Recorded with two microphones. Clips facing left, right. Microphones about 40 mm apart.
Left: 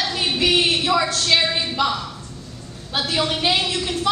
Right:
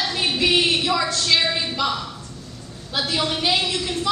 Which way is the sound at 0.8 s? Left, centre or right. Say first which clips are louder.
Left 2 dB; left.